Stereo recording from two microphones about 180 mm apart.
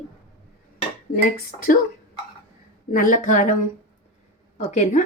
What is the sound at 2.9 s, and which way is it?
Speech, 50° left (ahead or behind).